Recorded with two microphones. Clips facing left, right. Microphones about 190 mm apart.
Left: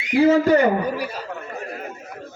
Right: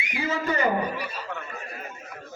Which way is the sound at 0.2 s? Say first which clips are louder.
Left 11 dB; 65° left (ahead or behind).